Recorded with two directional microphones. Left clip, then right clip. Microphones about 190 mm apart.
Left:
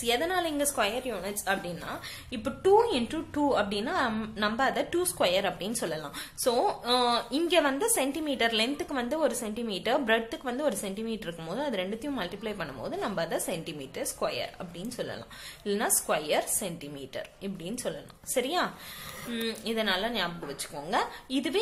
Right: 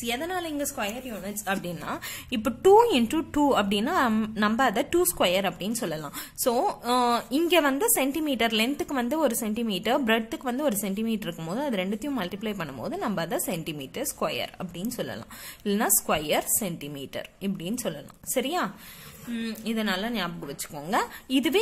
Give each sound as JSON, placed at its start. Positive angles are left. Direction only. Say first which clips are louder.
{"t": 0.0, "sound": "a woman's voice", "louder": "left 2 dB", "side_deg": -30}
{"t": 1.4, "sound": "speech", "louder": "right 1 dB", "side_deg": -30}
{"t": 1.9, "sound": "speech", "louder": "right 5 dB", "side_deg": -45}